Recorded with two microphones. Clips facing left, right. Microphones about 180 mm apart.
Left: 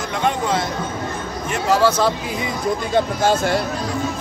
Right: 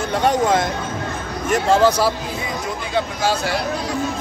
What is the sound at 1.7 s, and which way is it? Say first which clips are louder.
Speech: right 1 dB; 15° right (ahead or behind).